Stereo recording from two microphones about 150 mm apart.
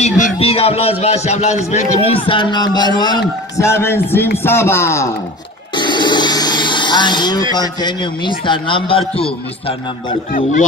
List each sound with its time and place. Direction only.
0.4 s speech: 40° left (ahead or behind); by 5.1 s 15° left (ahead or behind)
5.8 s a sound: 30° left (ahead or behind)
7.5 s speech: 30° left (ahead or behind)
10.3 s speech: 60° left (ahead or behind)